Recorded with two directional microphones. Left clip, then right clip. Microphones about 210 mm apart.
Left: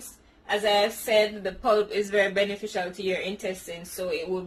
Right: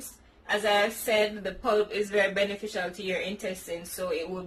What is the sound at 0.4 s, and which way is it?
Speech, 25° left (ahead or behind).